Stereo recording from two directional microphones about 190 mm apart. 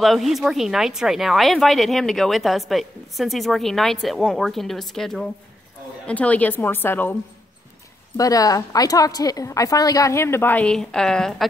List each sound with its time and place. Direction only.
0.0 s a woman's voice: centre (ahead or behind)
8.2 s a woman's voice: 20° left (ahead or behind); by 11.4 s 5° left (ahead or behind)